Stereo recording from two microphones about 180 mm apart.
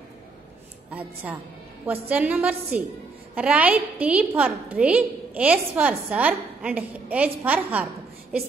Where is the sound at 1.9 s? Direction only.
10° right (ahead or behind).